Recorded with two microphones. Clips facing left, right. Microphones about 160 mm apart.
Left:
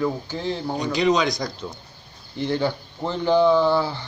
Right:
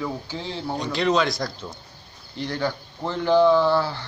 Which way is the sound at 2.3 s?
20° left (ahead or behind).